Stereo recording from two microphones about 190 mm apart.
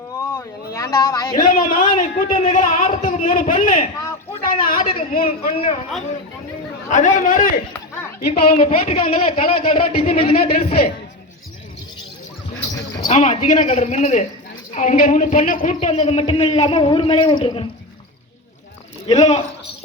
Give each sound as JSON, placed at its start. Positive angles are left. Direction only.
{"t": 0.2, "sound": "a sound", "side_deg": 15}
{"t": 1.4, "sound": "a man's voice", "side_deg": 45}
{"t": 6.9, "sound": "a man's voice", "side_deg": 40}
{"t": 8.2, "sound": "a man's voice", "side_deg": 30}
{"t": 13.1, "sound": "a man's voice", "side_deg": 35}
{"t": 19.0, "sound": "a man's voice", "side_deg": 35}